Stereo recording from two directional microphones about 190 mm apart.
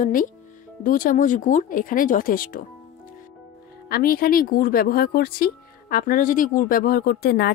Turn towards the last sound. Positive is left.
turn(degrees=55)  # may be behind; listen again after turning